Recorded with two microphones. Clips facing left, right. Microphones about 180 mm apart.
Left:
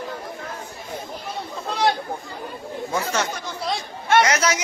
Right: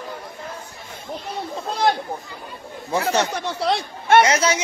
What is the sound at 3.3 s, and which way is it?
Speech, 70° right (ahead or behind).